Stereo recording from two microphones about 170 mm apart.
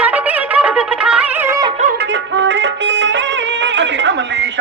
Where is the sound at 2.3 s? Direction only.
90° right.